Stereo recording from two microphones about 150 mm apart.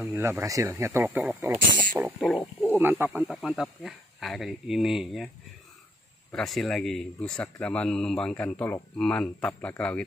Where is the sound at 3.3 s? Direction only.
Centre (ahead or behind).